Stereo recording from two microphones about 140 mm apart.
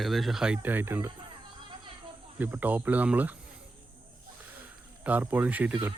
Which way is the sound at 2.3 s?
10° right (ahead or behind).